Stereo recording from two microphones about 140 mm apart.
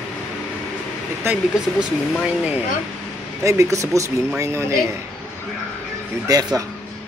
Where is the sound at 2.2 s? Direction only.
10° right (ahead or behind).